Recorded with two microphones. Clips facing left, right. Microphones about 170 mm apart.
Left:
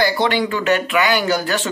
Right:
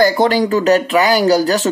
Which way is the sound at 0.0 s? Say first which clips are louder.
Right 5 dB; 40° right (ahead or behind).